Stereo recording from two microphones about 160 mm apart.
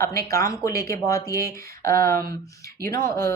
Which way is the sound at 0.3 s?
20° left (ahead or behind).